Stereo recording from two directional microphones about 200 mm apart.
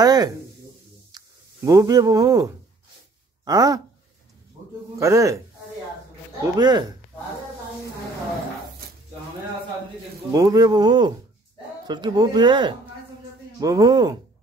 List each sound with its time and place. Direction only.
0.0 s speech: 20° right (ahead or behind)
4.9 s a man's voice: 15° right (ahead or behind)
6.5 s speech: 20° right (ahead or behind)
10.3 s speech: 20° right (ahead or behind)